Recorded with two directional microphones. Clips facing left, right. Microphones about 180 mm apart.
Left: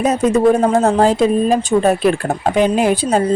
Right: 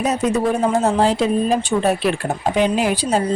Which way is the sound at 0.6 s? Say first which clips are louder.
Left 4 dB; 45° left (ahead or behind).